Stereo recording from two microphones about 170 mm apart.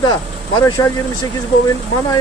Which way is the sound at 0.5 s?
20° left (ahead or behind).